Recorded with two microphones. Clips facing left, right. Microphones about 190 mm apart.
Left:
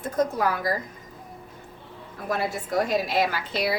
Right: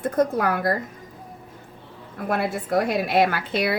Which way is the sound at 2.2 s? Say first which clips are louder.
Right 3 dB; 60° right (ahead or behind).